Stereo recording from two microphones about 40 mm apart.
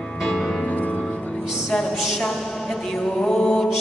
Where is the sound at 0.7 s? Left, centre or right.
Left.